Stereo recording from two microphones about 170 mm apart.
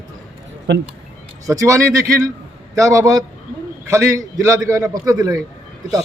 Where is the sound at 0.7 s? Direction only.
90° right.